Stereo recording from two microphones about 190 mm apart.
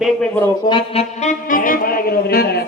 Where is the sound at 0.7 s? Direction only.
30° left (ahead or behind).